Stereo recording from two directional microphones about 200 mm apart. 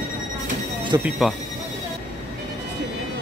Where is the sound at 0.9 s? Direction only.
15° right (ahead or behind).